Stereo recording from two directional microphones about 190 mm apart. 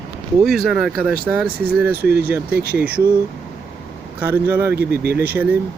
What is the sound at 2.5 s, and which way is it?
Speech, 55° right (ahead or behind).